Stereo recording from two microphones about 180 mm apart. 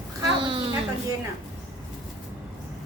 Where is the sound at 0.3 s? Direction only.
30° right (ahead or behind).